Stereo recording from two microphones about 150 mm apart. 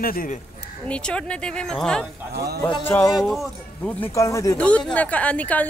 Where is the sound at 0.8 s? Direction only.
5° left (ahead or behind).